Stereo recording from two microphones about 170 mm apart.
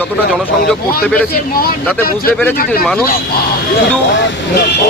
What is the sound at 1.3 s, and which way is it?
Speech, 60° left (ahead or behind).